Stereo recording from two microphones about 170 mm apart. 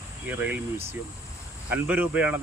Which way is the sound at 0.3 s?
10° right (ahead or behind).